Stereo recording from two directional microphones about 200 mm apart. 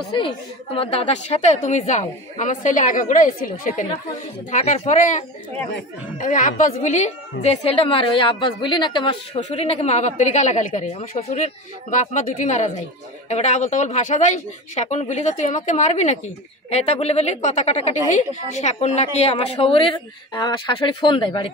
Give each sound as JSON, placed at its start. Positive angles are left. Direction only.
{"t": 0.7, "sound": "a woman's voice", "side_deg": 30}